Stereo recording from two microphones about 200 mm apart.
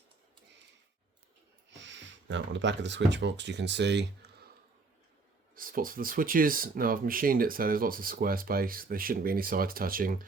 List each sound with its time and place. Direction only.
1.7 s speech: 65° right (ahead or behind)
5.5 s speech: 45° right (ahead or behind)